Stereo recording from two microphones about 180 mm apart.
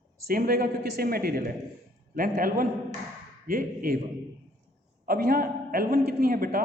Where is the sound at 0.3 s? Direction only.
55° right (ahead or behind).